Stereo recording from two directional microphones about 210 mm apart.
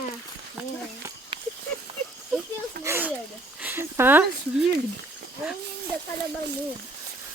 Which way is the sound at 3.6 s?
10° right (ahead or behind).